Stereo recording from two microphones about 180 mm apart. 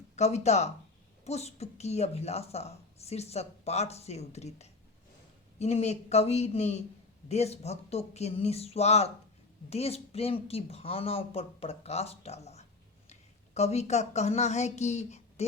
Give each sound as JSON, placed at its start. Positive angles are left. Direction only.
{"t": 0.2, "sound": "speech", "side_deg": 35}